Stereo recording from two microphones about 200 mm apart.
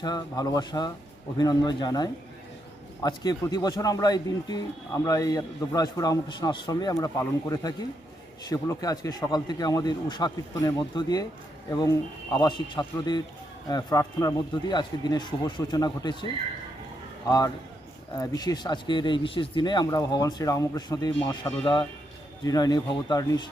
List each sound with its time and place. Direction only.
0.0 s speech: 20° left (ahead or behind)
17.2 s speech: 20° left (ahead or behind)